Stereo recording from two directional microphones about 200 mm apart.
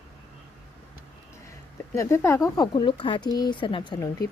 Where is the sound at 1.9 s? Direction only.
15° left (ahead or behind).